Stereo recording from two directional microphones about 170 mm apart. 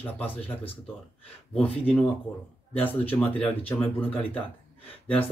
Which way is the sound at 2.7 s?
10° left (ahead or behind).